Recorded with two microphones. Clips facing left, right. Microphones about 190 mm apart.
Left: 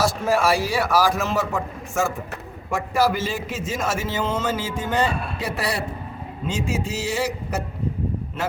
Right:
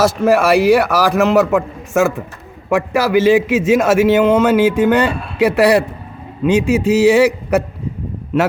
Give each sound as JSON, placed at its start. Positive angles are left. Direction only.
{"t": 0.0, "sound": "a man's voice", "side_deg": -65}